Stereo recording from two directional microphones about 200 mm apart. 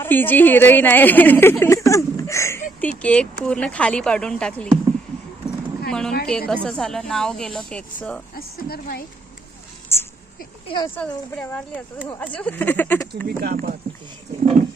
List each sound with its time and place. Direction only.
0.0 s speech: 10° left (ahead or behind)
5.9 s speech: 5° left (ahead or behind)
8.4 s a woman's voice: 50° left (ahead or behind)
9.9 s speech: 10° left (ahead or behind)
10.9 s speech: 5° left (ahead or behind)
13.2 s speech: 45° right (ahead or behind)